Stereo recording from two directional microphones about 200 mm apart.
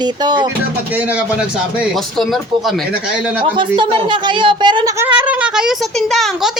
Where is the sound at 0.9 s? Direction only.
5° right (ahead or behind).